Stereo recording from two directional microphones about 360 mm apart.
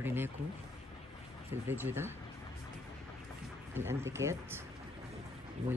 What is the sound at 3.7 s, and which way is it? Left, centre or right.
Speech, centre.